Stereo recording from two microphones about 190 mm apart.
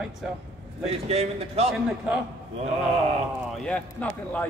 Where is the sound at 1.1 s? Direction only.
35° right (ahead or behind).